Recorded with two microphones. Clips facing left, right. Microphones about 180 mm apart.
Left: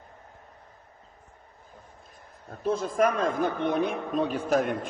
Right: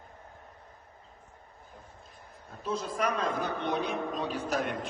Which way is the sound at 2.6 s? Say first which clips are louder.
Left 7 dB; 50° left (ahead or behind).